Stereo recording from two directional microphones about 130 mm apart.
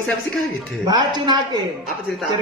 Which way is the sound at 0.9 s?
30° right (ahead or behind).